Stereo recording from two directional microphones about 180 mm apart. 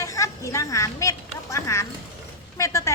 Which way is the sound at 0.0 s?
20° left (ahead or behind).